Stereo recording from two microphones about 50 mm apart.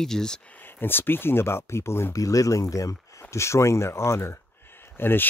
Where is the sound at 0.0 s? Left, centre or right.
Centre.